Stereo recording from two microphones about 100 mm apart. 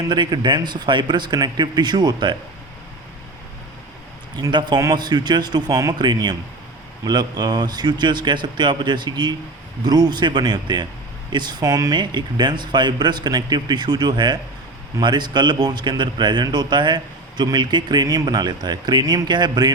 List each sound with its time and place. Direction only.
0.1 s speech: 50° right (ahead or behind)
4.4 s speech: 45° right (ahead or behind)